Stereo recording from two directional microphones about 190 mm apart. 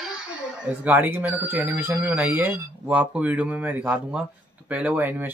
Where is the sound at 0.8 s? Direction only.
10° right (ahead or behind).